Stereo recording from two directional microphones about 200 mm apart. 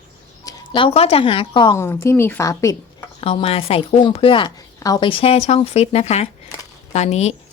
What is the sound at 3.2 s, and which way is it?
Speech, 30° left (ahead or behind).